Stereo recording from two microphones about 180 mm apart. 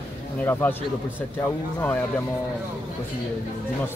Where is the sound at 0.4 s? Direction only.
10° left (ahead or behind).